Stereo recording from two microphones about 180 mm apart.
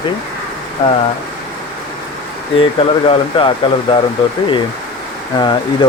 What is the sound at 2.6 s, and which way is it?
Speech, 30° left (ahead or behind).